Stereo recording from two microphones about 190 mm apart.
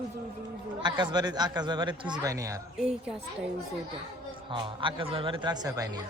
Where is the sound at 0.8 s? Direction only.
20° right (ahead or behind).